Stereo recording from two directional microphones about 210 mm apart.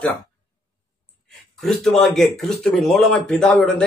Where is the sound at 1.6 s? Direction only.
Centre (ahead or behind).